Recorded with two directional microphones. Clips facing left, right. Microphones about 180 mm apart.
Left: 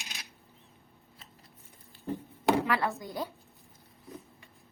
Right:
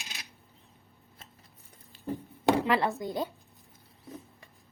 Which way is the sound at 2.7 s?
20° right (ahead or behind).